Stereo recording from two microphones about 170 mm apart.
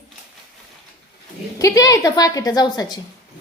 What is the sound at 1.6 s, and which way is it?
A woman's voice, 20° left (ahead or behind).